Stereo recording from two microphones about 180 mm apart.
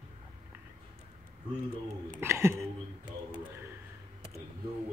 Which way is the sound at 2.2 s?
15° right (ahead or behind).